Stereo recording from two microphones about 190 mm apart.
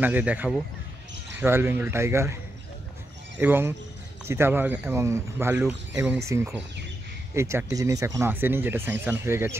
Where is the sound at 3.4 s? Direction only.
10° right (ahead or behind).